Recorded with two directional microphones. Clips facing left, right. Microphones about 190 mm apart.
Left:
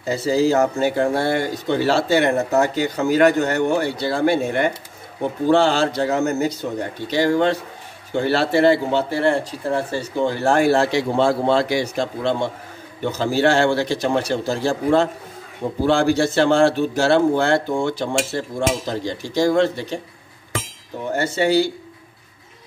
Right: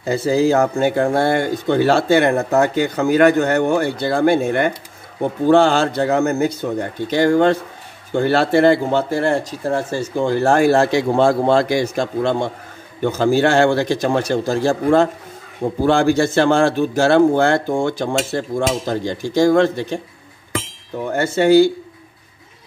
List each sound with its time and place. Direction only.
0.1 s speech: 55° right (ahead or behind)
21.2 s speech: 50° right (ahead or behind)